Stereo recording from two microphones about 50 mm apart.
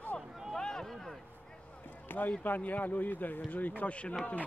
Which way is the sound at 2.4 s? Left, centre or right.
Left.